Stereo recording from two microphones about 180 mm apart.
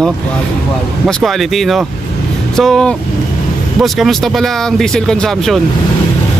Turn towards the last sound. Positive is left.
turn(degrees=0)  # may be behind; listen again after turning